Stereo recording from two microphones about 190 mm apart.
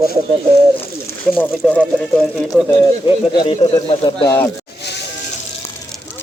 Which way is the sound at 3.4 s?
30° left (ahead or behind).